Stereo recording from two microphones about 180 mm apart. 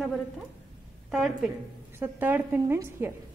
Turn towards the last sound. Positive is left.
turn(degrees=-15)  # may be behind; listen again after turning